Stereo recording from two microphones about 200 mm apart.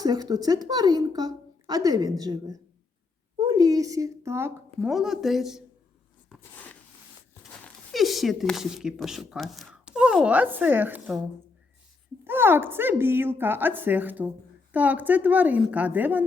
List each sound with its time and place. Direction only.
0.0 s a woman's voice: 20° right (ahead or behind)
4.9 s speech: centre (ahead or behind)
6.4 s a sound: 10° left (ahead or behind)
7.6 s speech: centre (ahead or behind)
12.2 s a woman's voice: 10° right (ahead or behind)